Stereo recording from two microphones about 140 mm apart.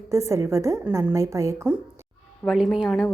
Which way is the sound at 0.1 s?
20° right (ahead or behind).